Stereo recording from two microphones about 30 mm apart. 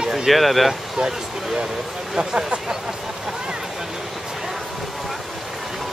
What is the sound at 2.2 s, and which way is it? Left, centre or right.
Speech, right.